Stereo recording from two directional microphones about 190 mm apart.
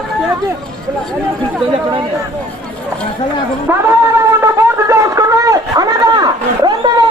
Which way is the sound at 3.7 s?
10° right (ahead or behind).